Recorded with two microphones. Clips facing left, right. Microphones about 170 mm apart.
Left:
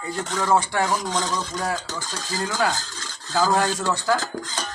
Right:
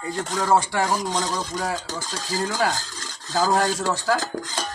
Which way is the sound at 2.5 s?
35° right (ahead or behind).